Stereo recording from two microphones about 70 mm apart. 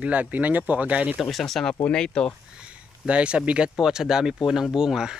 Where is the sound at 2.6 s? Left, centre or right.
Centre.